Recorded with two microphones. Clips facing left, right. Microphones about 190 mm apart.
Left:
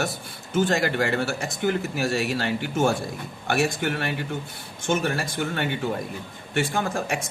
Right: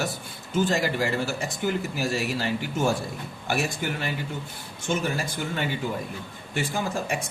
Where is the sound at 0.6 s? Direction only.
65° left (ahead or behind).